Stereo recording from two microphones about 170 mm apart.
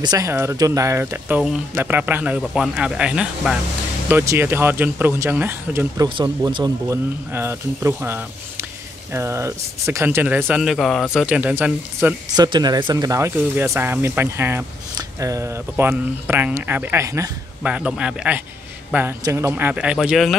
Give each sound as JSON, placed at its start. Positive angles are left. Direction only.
{"t": 0.0, "sound": "speech", "side_deg": -20}
{"t": 6.0, "sound": "speech", "side_deg": -25}
{"t": 12.4, "sound": "speech", "side_deg": -25}
{"t": 17.6, "sound": "speech", "side_deg": -5}